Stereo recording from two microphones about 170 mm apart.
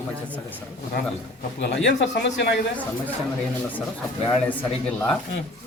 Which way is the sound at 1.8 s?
90° left.